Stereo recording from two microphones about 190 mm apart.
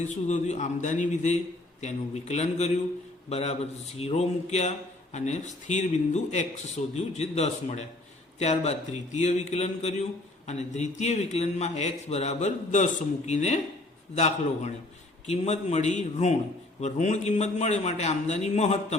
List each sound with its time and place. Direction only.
0.3 s a man's voice: 40° left (ahead or behind)